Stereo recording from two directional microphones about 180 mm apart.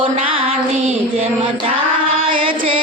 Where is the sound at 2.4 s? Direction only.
30° right (ahead or behind).